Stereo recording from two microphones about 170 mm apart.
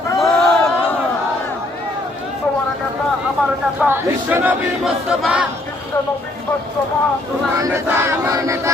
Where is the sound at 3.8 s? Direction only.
10° right (ahead or behind).